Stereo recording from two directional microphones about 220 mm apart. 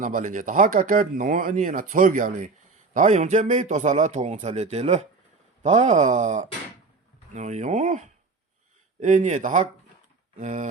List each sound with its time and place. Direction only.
0.0 s speech: 35° right (ahead or behind)